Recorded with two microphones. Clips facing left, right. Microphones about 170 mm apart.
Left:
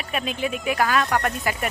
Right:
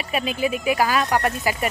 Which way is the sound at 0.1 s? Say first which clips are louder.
Right 3 dB; 5° right (ahead or behind).